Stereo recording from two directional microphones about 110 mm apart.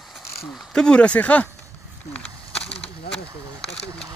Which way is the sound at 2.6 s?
65° left (ahead or behind).